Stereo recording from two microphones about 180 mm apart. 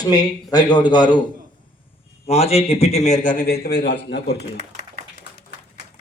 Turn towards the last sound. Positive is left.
turn(degrees=70)  # may be behind; listen again after turning